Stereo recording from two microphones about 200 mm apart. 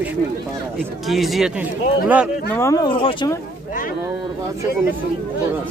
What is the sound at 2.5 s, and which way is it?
Speech, 15° left (ahead or behind).